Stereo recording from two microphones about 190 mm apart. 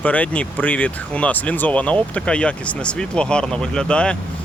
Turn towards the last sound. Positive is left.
turn(degrees=5)  # may be behind; listen again after turning